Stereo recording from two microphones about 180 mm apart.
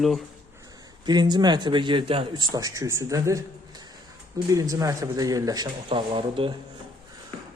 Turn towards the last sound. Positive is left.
turn(degrees=-30)  # may be behind; listen again after turning